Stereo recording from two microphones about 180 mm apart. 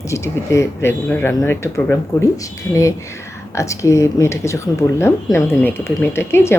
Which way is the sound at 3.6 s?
15° left (ahead or behind).